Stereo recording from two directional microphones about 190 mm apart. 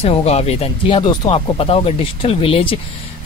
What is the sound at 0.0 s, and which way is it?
Speech, 30° left (ahead or behind).